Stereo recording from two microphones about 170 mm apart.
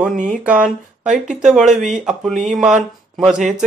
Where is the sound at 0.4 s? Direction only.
5° right (ahead or behind).